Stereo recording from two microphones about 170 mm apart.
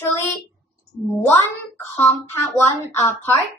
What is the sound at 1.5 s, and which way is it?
A woman's voice, 10° left (ahead or behind).